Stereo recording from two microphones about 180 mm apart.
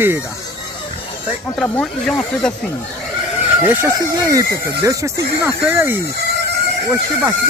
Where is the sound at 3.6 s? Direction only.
15° right (ahead or behind).